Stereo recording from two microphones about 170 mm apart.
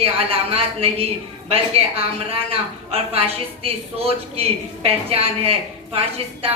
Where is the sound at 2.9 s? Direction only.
35° right (ahead or behind).